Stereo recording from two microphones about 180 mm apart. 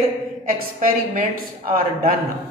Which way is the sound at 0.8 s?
50° right (ahead or behind).